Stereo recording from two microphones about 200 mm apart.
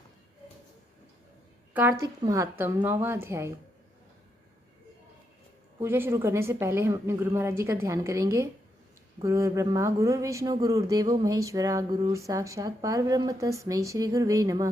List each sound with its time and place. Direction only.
1.7 s speech: 10° right (ahead or behind)
5.8 s speech: 10° right (ahead or behind)